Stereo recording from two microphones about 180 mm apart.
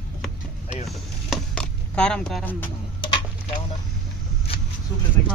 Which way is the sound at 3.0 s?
25° left (ahead or behind).